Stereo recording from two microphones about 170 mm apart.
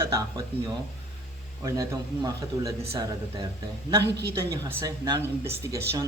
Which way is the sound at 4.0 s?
80° right.